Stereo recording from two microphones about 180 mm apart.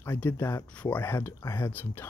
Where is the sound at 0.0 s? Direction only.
10° left (ahead or behind).